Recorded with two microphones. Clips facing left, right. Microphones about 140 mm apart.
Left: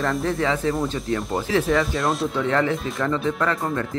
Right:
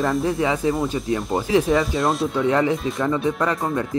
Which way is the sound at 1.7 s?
Centre (ahead or behind).